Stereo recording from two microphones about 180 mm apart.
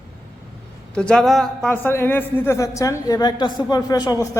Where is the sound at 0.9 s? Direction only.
5° left (ahead or behind).